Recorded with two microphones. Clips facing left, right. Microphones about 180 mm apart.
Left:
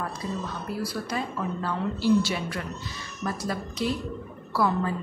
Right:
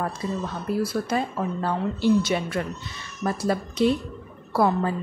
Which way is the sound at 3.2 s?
40° right (ahead or behind).